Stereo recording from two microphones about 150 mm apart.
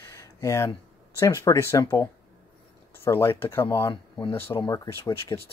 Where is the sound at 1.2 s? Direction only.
20° left (ahead or behind).